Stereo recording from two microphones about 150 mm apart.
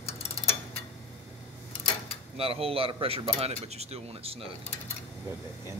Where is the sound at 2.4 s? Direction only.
40° right (ahead or behind).